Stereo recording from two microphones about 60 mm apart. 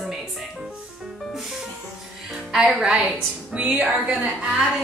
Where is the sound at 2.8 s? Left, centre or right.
Centre.